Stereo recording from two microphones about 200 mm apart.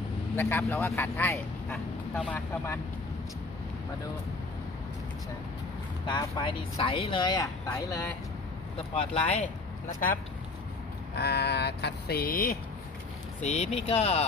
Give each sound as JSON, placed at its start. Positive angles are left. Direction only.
{"t": 0.4, "sound": "speech", "side_deg": 10}
{"t": 6.0, "sound": "speech", "side_deg": 25}
{"t": 8.9, "sound": "speech", "side_deg": 30}
{"t": 11.1, "sound": "a sound", "side_deg": 55}
{"t": 13.4, "sound": "speech", "side_deg": 35}